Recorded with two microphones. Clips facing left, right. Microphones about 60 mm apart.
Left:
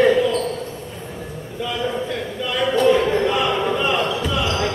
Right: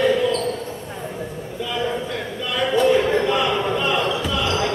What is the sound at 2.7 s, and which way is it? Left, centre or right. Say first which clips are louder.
Basketball bounce: even; centre.